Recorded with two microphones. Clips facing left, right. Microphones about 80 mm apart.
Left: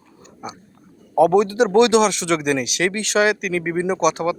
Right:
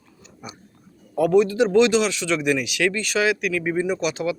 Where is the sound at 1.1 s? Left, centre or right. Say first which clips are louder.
Left 3 dB; left.